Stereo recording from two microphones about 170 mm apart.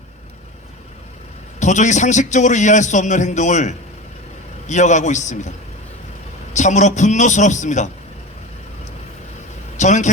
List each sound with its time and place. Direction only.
1.5 s a man's voice: 45° left (ahead or behind)
9.7 s a man's voice: 45° left (ahead or behind)